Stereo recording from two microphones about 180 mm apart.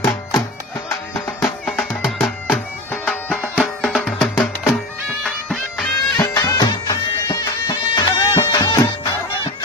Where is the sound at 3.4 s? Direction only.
5° right (ahead or behind).